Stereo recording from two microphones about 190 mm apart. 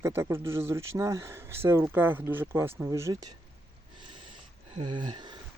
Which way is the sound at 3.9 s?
25° right (ahead or behind).